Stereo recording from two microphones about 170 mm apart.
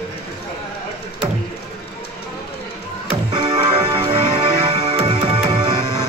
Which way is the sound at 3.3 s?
30° right (ahead or behind).